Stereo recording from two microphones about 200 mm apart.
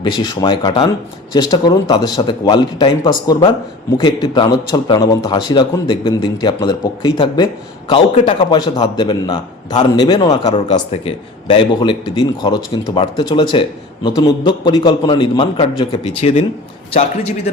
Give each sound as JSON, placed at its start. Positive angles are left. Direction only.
{"t": 0.0, "sound": "a man's voice", "side_deg": 25}